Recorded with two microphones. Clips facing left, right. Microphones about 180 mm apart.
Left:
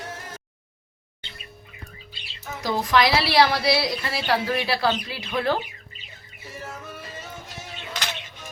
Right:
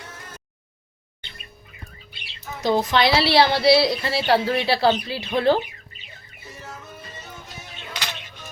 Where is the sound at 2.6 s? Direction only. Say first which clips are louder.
Right 2 dB; 25° right (ahead or behind).